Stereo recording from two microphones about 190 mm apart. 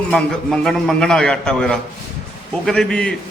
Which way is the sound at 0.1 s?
5° left (ahead or behind).